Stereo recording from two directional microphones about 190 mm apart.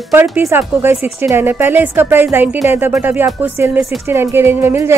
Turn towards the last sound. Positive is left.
turn(degrees=-15)  # may be behind; listen again after turning